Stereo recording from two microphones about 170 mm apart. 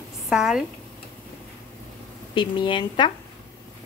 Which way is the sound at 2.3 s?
30° left (ahead or behind).